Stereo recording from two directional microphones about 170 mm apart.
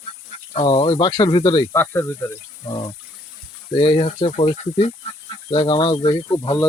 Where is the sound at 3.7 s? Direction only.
30° left (ahead or behind).